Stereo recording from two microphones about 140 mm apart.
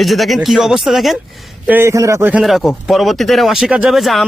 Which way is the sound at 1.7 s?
15° right (ahead or behind).